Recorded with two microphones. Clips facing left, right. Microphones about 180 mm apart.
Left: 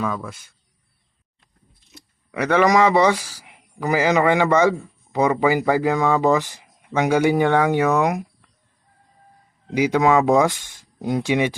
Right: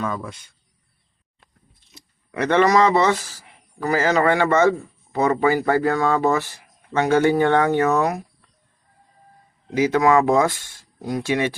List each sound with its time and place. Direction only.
0.0 s speech: 5° left (ahead or behind)
2.0 s speech: 5° left (ahead or behind)
9.7 s speech: 15° left (ahead or behind)